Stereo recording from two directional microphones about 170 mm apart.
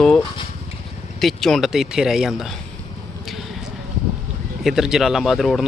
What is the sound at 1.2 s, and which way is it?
Speech, centre (ahead or behind).